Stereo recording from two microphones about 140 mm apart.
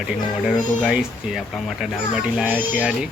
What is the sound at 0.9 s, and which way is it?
Speech, 5° right (ahead or behind).